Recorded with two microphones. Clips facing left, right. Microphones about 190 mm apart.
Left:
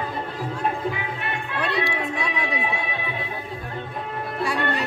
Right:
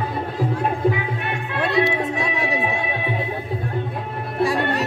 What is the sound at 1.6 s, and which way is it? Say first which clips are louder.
Music: right 6 dB; 45° right (ahead or behind).